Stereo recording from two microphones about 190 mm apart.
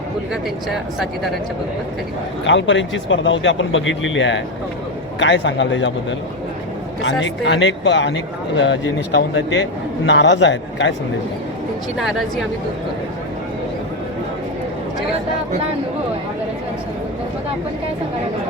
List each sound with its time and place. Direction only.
0.7 s speech: centre (ahead or behind)
2.4 s speech: 75° left (ahead or behind)
5.2 s speech: 75° left (ahead or behind)
11.9 s speech: centre (ahead or behind)